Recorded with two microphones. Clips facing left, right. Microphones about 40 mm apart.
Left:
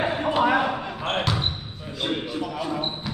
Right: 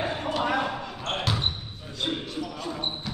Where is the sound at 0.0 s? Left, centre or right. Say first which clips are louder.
Left 6 dB; left.